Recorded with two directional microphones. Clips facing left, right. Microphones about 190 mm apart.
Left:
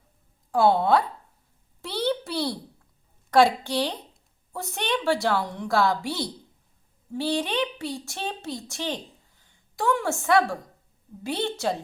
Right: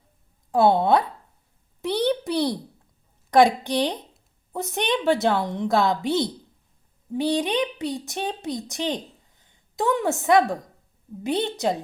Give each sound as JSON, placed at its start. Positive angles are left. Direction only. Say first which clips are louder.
{"t": 0.5, "sound": "a woman's voice", "louder": "right 2 dB", "side_deg": -20}
{"t": 1.8, "sound": "a sound", "louder": "right 4 dB", "side_deg": -20}
{"t": 3.2, "sound": "a woman's voice", "louder": "right 2 dB", "side_deg": -20}